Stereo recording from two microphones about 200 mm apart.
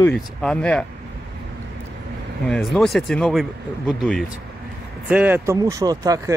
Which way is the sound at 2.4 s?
Centre (ahead or behind).